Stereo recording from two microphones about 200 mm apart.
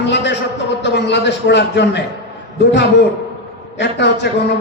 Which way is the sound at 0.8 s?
60° left (ahead or behind).